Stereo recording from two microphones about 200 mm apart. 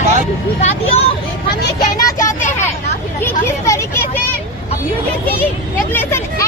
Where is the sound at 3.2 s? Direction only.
15° left (ahead or behind).